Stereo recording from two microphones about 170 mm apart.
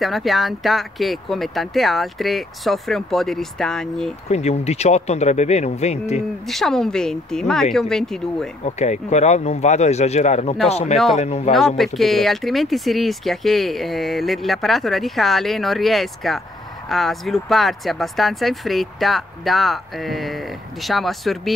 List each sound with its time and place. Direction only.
0.0 s speech: centre (ahead or behind)
4.3 s speech: 40° left (ahead or behind)
6.5 s speech: centre (ahead or behind)
8.6 s speech: 40° left (ahead or behind)
11.5 s speech: centre (ahead or behind)